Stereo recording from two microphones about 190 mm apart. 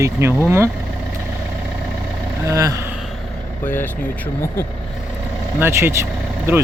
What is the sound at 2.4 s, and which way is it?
Speech, 15° right (ahead or behind).